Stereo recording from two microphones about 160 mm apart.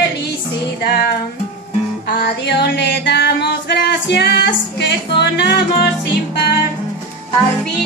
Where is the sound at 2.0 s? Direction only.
90° left.